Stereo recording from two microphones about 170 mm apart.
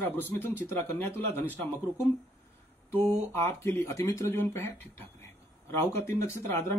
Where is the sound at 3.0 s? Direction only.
15° left (ahead or behind).